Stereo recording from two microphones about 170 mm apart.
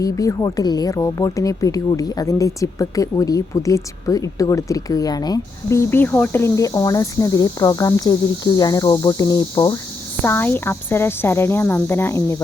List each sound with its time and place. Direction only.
0.0 s a woman's voice: 20° left (ahead or behind)